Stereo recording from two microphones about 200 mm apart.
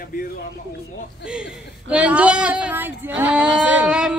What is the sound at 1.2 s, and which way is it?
A woman's voice, 5° right (ahead or behind).